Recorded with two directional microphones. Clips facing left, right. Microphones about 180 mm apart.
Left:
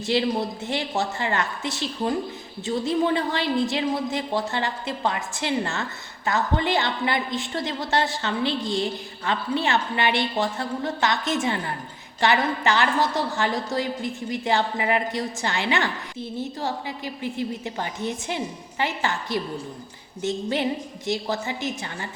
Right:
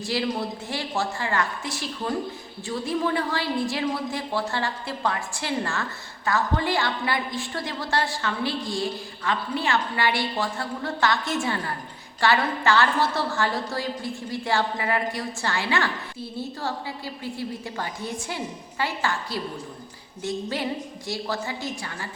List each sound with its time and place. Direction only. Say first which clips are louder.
0.0 s a woman's voice: left 3 dB; 25° left (ahead or behind)